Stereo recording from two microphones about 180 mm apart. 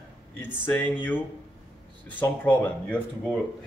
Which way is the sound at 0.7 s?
10° left (ahead or behind).